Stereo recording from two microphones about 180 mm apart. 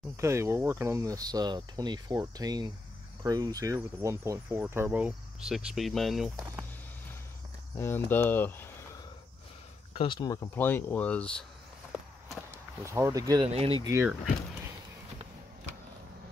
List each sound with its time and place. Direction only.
0.2 s speech: 15° right (ahead or behind); by 6.3 s centre (ahead or behind)
7.7 s speech: 10° left (ahead or behind)
9.9 s speech: 25° left (ahead or behind); by 11.4 s 5° left (ahead or behind)
12.8 s speech: 15° right (ahead or behind)
13.5 s speech: 35° right (ahead or behind)
13.8 s speech: 15° right (ahead or behind)